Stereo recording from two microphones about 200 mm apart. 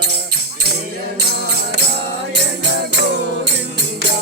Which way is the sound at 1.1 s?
55° right (ahead or behind).